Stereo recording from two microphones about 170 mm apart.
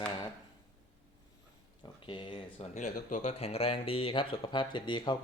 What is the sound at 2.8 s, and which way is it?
Speech, 45° left (ahead or behind).